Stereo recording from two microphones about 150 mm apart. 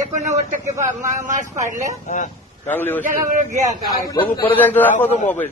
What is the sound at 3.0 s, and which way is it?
Speech, 55° right (ahead or behind).